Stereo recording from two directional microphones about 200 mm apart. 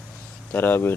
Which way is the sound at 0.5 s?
10° left (ahead or behind).